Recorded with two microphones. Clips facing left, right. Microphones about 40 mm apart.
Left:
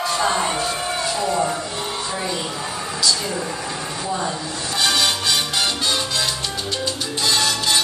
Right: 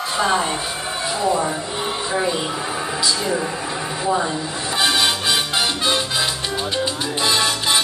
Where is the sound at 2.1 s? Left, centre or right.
Centre.